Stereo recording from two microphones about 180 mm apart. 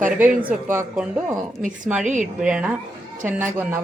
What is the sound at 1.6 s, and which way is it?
Speech, 45° right (ahead or behind).